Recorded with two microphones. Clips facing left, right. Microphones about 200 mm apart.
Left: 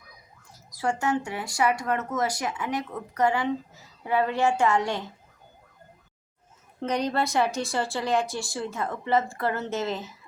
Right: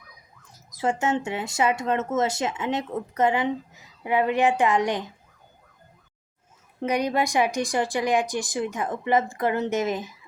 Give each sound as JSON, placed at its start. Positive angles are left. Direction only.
{"t": 0.5, "sound": "speech", "side_deg": -20}
{"t": 6.7, "sound": "speech", "side_deg": -10}